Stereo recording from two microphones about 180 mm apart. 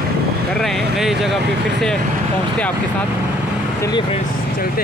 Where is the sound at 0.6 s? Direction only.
Centre (ahead or behind).